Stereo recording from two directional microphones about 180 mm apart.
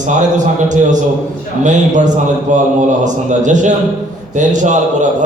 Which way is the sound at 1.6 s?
45° right (ahead or behind).